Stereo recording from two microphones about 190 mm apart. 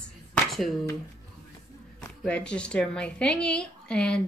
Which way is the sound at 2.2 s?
5° left (ahead or behind).